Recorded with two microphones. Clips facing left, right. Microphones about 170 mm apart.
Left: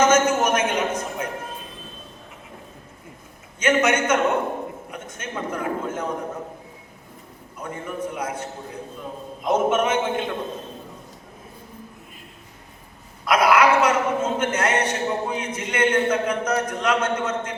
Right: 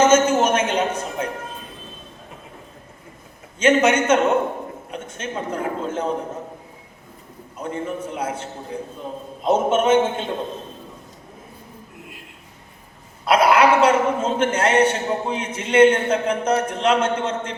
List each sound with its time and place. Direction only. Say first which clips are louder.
0.0 s a sound: right 3 dB; 25° right (ahead or behind)
3.6 s a man's voice: right 3 dB; 30° right (ahead or behind)
7.6 s a man's voice: right 3 dB; 30° right (ahead or behind)
13.2 s a man's voice: right 2 dB; 30° right (ahead or behind)